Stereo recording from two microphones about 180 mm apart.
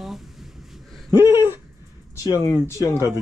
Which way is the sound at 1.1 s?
15° right (ahead or behind).